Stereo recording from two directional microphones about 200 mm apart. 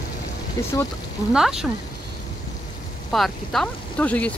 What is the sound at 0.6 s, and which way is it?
Speech, 15° left (ahead or behind).